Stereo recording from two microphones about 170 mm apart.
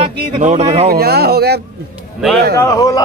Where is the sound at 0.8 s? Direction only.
65° right (ahead or behind).